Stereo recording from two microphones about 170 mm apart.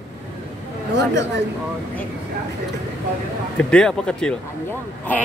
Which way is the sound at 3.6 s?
5° left (ahead or behind).